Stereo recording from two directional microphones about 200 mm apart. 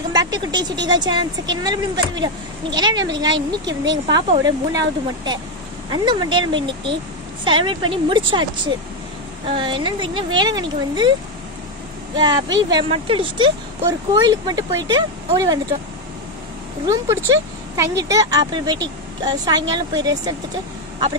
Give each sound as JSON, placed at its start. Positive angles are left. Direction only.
{"t": 0.1, "sound": "speech", "side_deg": -20}
{"t": 12.2, "sound": "speech", "side_deg": -20}
{"t": 16.8, "sound": "speech", "side_deg": -15}